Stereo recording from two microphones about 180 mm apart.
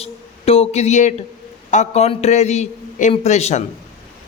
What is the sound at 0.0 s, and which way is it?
A man's voice, 35° left (ahead or behind).